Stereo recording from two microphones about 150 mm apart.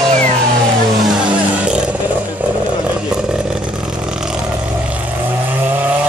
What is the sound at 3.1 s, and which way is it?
Vehicle, 5° right (ahead or behind).